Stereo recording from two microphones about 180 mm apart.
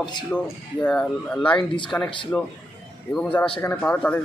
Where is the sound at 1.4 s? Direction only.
25° left (ahead or behind).